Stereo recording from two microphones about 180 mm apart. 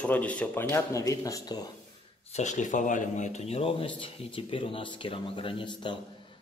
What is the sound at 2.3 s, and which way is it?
Speech, 40° left (ahead or behind).